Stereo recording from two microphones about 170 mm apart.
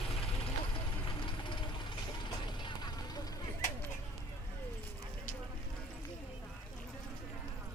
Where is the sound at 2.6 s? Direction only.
25° left (ahead or behind).